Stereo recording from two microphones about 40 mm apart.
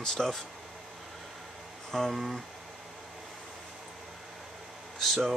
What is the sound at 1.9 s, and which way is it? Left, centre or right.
Speech, centre.